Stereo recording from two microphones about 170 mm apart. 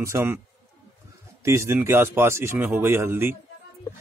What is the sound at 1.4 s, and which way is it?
Speech, 15° right (ahead or behind).